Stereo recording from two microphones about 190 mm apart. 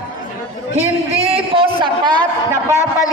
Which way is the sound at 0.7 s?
35° right (ahead or behind).